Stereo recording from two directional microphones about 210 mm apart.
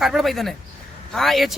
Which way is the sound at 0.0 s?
Centre (ahead or behind).